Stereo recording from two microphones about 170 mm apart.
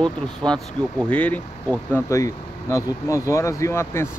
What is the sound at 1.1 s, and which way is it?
Speech, 10° left (ahead or behind).